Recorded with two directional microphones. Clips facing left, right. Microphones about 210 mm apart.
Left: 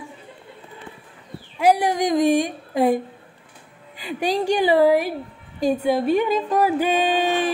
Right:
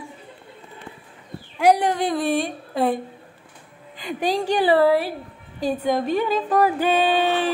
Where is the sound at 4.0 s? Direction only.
10° left (ahead or behind).